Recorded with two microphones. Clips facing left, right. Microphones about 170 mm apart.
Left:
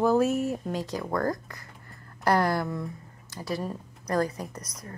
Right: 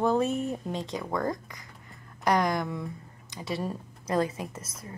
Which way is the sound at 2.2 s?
15° right (ahead or behind).